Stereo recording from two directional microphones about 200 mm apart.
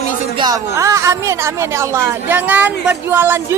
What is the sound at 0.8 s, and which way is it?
A woman's voice, 15° right (ahead or behind).